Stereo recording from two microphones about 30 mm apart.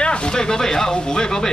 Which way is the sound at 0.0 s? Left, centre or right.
Left.